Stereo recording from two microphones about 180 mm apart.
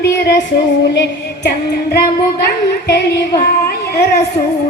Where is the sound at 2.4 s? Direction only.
65° left (ahead or behind).